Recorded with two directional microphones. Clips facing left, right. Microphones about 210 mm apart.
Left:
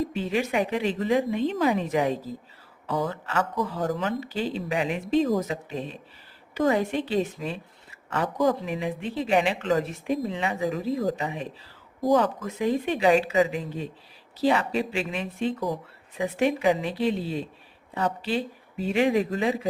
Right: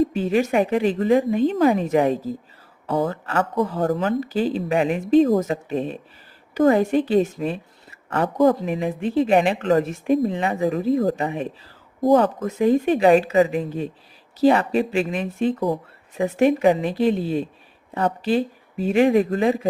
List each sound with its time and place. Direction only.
0.2 s speech: 45° right (ahead or behind)